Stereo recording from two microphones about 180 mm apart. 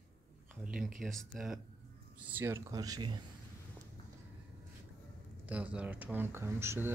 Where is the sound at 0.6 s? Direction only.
Centre (ahead or behind).